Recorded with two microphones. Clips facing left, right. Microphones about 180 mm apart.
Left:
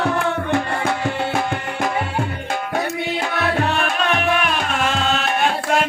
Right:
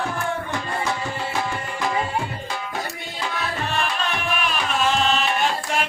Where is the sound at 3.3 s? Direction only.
65° left (ahead or behind).